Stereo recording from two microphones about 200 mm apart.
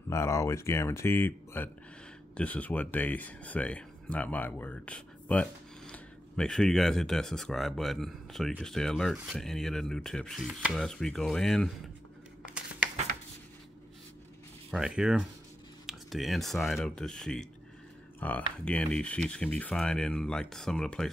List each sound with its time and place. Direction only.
0.1 s speech: 15° left (ahead or behind)
12.4 s a sound: 5° right (ahead or behind)
14.7 s speech: centre (ahead or behind)